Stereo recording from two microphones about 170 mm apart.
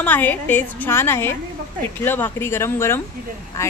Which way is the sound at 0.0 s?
10° left (ahead or behind).